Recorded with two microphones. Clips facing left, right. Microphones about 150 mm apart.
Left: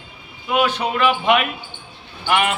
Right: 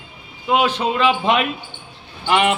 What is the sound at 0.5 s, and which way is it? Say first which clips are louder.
A man's voice: right 2 dB; 25° right (ahead or behind).